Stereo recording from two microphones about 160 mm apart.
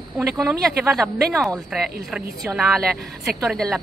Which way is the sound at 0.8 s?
Centre (ahead or behind).